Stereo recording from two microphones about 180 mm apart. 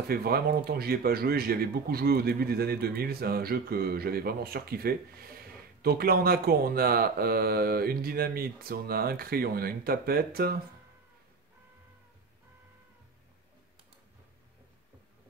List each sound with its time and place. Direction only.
0.1 s speech: 60° right (ahead or behind)